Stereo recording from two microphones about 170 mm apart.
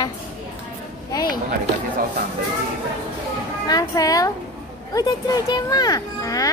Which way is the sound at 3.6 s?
20° left (ahead or behind).